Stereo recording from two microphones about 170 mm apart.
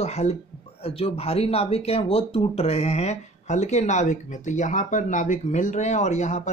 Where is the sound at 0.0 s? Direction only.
40° left (ahead or behind).